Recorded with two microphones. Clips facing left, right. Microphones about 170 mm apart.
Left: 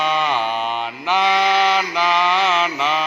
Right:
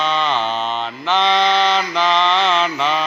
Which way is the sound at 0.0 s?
10° left (ahead or behind).